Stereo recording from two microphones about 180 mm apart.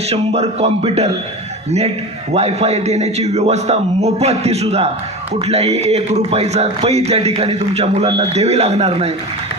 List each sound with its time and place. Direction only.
0.1 s speech: 35° right (ahead or behind)
2.3 s speech: 35° right (ahead or behind)